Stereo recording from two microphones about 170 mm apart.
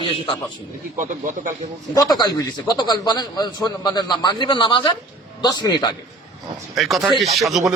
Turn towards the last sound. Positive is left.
turn(degrees=0)  # may be behind; listen again after turning